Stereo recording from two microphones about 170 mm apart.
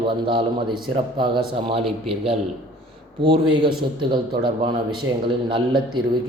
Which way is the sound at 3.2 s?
30° right (ahead or behind).